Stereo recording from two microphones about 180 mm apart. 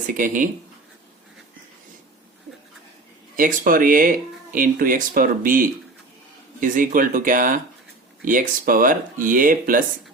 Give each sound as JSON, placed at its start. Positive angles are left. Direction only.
{"t": 0.1, "sound": "speech", "side_deg": -45}
{"t": 3.3, "sound": "speech", "side_deg": -50}